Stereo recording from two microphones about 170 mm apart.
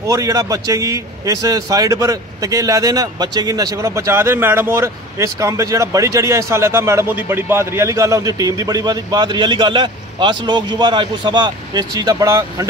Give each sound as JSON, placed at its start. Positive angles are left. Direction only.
{"t": 0.0, "sound": "speech", "side_deg": -20}